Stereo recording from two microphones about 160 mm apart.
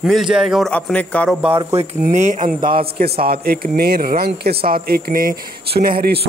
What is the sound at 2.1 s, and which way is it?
Speech, 55° right (ahead or behind).